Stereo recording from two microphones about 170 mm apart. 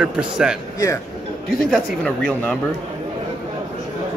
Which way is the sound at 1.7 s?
5° left (ahead or behind).